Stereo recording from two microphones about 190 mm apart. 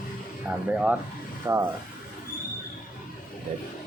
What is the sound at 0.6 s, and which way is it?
Speech, 5° right (ahead or behind).